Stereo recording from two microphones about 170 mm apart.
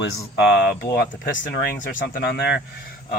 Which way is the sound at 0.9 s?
70° left (ahead or behind).